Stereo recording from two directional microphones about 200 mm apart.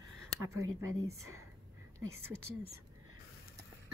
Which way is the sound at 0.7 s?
90° right.